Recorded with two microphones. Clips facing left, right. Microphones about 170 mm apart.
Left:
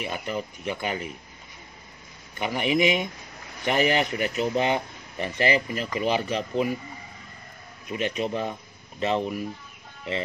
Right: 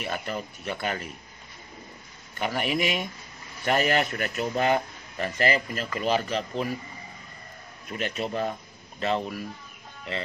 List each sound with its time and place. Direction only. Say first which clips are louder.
0.0 s speech: left 1 dB; 15° left (ahead or behind)
2.3 s speech: left 3 dB; 15° left (ahead or behind)
7.9 s speech: left 3 dB; 15° left (ahead or behind)